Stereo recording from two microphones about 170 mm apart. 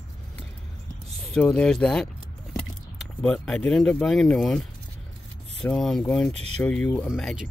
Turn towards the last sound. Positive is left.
turn(degrees=0)  # may be behind; listen again after turning